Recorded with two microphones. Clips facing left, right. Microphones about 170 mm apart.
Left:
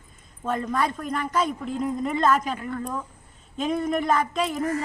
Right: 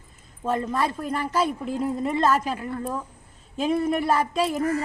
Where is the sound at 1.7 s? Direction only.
5° right (ahead or behind).